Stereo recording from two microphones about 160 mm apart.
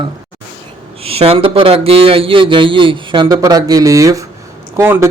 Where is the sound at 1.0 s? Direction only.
35° right (ahead or behind).